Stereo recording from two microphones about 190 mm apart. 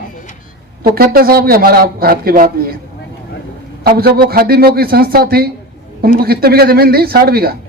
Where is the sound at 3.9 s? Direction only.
55° right (ahead or behind).